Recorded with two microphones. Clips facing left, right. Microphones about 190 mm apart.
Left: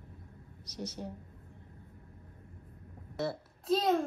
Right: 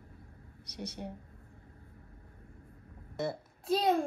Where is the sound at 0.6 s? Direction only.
60° right (ahead or behind).